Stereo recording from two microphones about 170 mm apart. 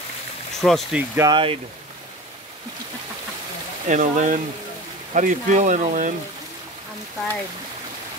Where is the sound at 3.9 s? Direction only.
50° right (ahead or behind).